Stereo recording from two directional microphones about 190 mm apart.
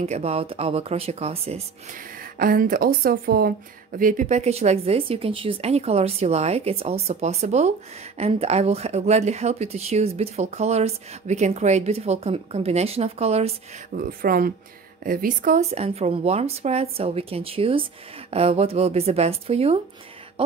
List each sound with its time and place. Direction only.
0.0 s speech: 35° right (ahead or behind)
2.3 s speech: 50° right (ahead or behind)
13.9 s speech: 50° right (ahead or behind); by 19.8 s 30° right (ahead or behind)
20.4 s throat clearing: 30° right (ahead or behind)